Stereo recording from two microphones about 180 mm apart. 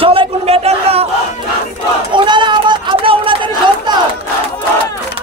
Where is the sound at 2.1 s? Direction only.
25° right (ahead or behind).